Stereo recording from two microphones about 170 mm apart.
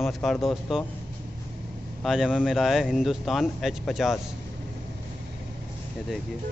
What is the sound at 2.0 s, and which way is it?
Speech, 5° right (ahead or behind).